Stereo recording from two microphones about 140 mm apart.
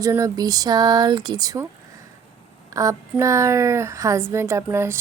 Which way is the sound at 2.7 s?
25° right (ahead or behind).